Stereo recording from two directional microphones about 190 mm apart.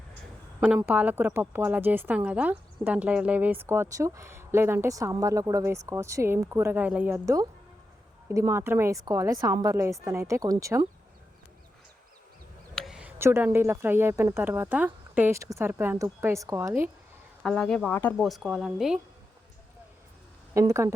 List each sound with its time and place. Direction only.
0.8 s a woman's voice: 10° right (ahead or behind)
12.7 s a woman's voice: centre (ahead or behind)
17.4 s speech: 5° left (ahead or behind)
20.5 s a woman's voice: 15° right (ahead or behind)